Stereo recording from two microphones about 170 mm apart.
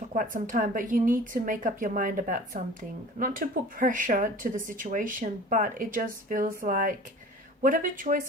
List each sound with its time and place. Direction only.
0.1 s speech: 50° right (ahead or behind)